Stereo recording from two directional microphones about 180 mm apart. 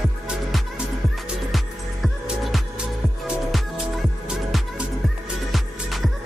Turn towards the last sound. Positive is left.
turn(degrees=0)  # may be behind; listen again after turning